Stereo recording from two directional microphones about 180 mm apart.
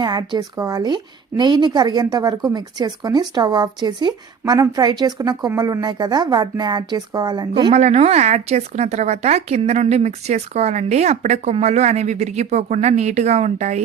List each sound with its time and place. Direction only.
0.0 s a woman's voice: 25° right (ahead or behind)
7.7 s speech: 40° right (ahead or behind)